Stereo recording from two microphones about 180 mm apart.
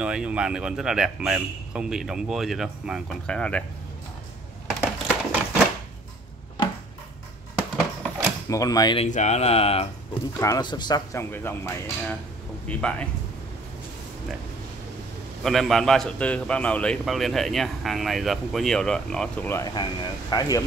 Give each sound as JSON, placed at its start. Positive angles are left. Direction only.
{"t": 0.0, "sound": "a man's voice", "side_deg": -5}
{"t": 5.0, "sound": "a sound", "side_deg": -5}
{"t": 7.7, "sound": "a sound", "side_deg": 0}
{"t": 8.5, "sound": "speech", "side_deg": 20}
{"t": 9.0, "sound": "speech", "side_deg": 40}
{"t": 10.4, "sound": "a man's voice", "side_deg": 20}
{"t": 15.4, "sound": "a man's voice", "side_deg": 0}